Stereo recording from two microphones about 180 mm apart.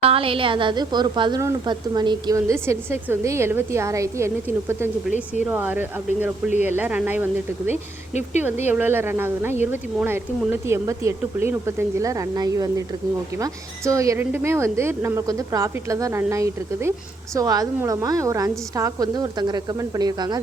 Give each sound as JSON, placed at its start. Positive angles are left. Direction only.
{"t": 0.0, "sound": "a woman's voice", "side_deg": -30}
{"t": 7.7, "sound": "speech", "side_deg": 40}
{"t": 8.6, "sound": "a woman's voice", "side_deg": -10}